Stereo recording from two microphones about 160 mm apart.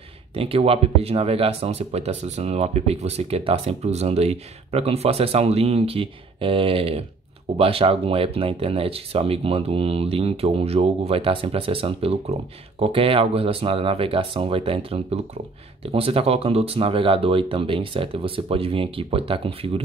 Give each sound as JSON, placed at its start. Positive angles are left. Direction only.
{"t": 0.3, "sound": "speech", "side_deg": -35}